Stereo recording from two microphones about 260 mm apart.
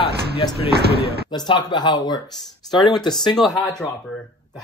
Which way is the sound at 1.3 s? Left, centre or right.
Centre.